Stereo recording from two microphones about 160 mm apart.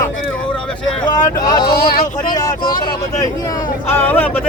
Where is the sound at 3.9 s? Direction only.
10° left (ahead or behind).